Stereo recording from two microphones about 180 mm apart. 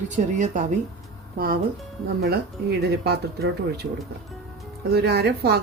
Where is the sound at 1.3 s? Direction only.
55° right (ahead or behind).